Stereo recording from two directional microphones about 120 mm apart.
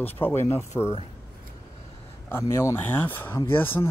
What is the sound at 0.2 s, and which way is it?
Speech, 20° left (ahead or behind).